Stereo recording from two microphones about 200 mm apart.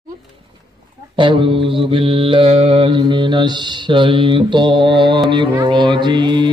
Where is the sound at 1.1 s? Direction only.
25° right (ahead or behind).